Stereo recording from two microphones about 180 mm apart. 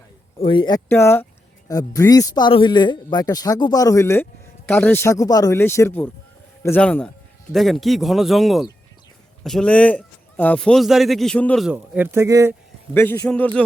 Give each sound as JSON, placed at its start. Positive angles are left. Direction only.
{"t": 0.3, "sound": "a man's voice", "side_deg": 30}
{"t": 0.9, "sound": "a man's voice", "side_deg": 10}
{"t": 11.7, "sound": "speech", "side_deg": -10}
{"t": 12.9, "sound": "a man's voice", "side_deg": 10}